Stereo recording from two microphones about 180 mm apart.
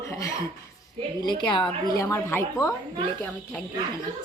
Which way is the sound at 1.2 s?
25° left (ahead or behind).